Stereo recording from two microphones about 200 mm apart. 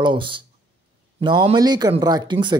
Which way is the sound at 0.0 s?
25° right (ahead or behind).